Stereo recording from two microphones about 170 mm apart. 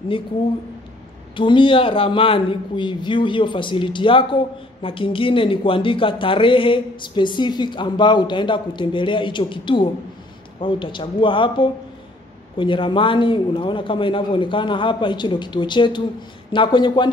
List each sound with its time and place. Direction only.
1.3 s a man's voice: 30° left (ahead or behind)